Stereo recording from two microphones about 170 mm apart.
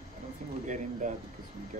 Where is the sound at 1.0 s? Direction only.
55° right (ahead or behind).